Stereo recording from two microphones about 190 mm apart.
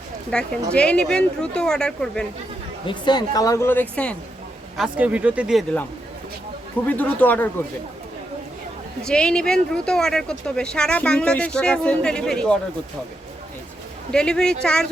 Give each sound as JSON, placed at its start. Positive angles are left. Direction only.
{"t": 0.3, "sound": "speech", "side_deg": 5}
{"t": 2.8, "sound": "speech", "side_deg": 25}
{"t": 4.8, "sound": "speech", "side_deg": -5}
{"t": 6.8, "sound": "speech", "side_deg": 10}
{"t": 9.0, "sound": "speech", "side_deg": 5}
{"t": 14.1, "sound": "speech", "side_deg": 5}